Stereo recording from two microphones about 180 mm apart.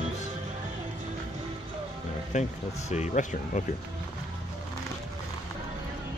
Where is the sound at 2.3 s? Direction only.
40° left (ahead or behind).